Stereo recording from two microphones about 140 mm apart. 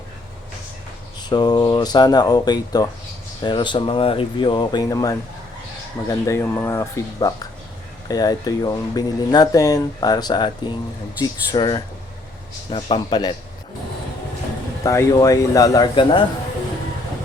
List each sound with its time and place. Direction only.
1.3 s speech: 30° left (ahead or behind)
14.8 s speech: 25° left (ahead or behind)